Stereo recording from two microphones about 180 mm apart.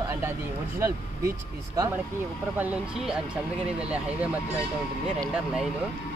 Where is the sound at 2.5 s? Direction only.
10° right (ahead or behind).